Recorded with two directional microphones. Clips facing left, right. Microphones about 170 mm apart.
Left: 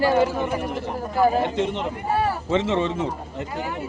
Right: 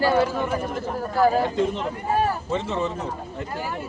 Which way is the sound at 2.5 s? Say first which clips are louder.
Left 4 dB; 90° left.